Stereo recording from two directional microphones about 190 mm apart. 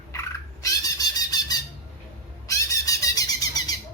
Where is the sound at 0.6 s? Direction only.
20° left (ahead or behind).